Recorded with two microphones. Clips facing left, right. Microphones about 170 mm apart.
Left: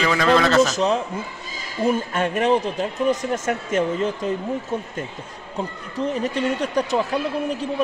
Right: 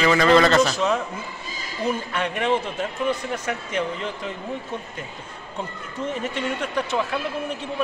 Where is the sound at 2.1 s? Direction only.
45° left (ahead or behind).